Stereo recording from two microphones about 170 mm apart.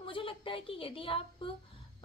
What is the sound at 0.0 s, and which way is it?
A woman's voice, 30° left (ahead or behind).